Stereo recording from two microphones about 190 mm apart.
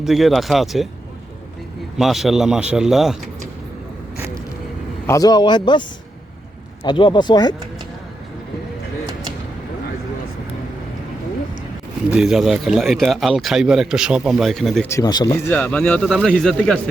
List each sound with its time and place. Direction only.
0.0 s speech: centre (ahead or behind)
2.0 s speech: centre (ahead or behind)
5.0 s speech: 20° left (ahead or behind)
6.8 s speech: 25° left (ahead or behind)
12.1 s speech: 5° right (ahead or behind)
14.8 s speech: 15° left (ahead or behind)